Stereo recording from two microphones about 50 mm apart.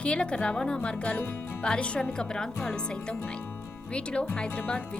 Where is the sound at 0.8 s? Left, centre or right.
Left.